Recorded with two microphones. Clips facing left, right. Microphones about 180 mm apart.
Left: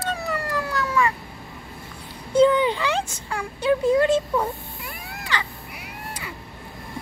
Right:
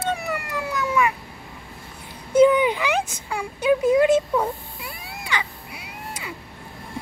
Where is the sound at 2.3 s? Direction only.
15° right (ahead or behind).